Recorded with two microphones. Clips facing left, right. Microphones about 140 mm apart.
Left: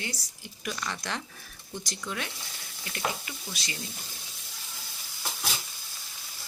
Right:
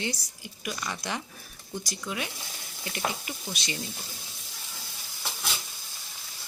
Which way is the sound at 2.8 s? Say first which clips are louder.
Right 1 dB; 20° right (ahead or behind).